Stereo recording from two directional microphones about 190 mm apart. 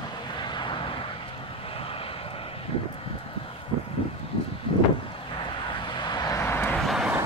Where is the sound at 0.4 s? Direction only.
25° left (ahead or behind).